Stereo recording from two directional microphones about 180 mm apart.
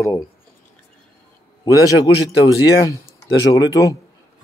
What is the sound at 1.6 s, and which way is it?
Speech, 20° left (ahead or behind).